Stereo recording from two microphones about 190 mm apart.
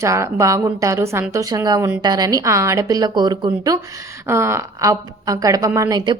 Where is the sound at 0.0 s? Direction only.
15° right (ahead or behind).